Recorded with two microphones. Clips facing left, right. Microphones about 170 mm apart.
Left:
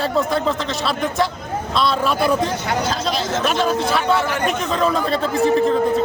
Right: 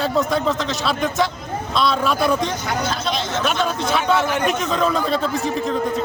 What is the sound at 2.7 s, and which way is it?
Speech, 40° left (ahead or behind).